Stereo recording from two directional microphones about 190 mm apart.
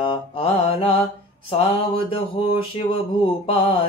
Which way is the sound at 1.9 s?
25° left (ahead or behind).